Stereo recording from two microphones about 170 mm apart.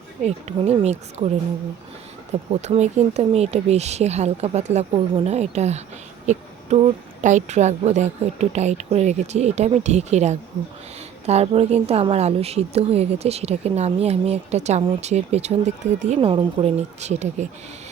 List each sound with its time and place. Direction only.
0.3 s a woman's voice: 40° right (ahead or behind)
2.5 s a woman's voice: 40° right (ahead or behind)